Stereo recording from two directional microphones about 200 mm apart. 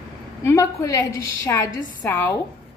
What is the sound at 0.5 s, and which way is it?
A woman's voice, 15° left (ahead or behind).